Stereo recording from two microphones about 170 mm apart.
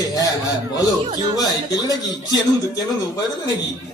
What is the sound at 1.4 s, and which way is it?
Speech, 20° left (ahead or behind).